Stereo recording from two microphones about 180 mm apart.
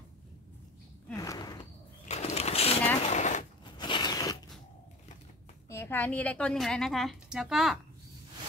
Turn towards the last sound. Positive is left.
turn(degrees=0)  # may be behind; listen again after turning